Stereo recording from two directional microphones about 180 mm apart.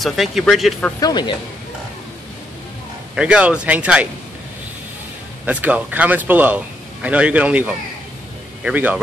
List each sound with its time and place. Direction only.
0.0 s speech: centre (ahead or behind)
0.9 s speech: 25° left (ahead or behind)
3.2 s a man's voice: 5° right (ahead or behind)
5.4 s a man's voice: 5° right (ahead or behind)